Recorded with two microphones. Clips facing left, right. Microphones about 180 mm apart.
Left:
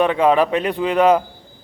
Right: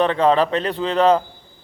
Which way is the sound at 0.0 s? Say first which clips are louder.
Left 1 dB; 10° left (ahead or behind).